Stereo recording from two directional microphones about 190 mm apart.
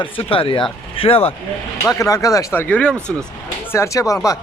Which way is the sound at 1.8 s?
15° left (ahead or behind).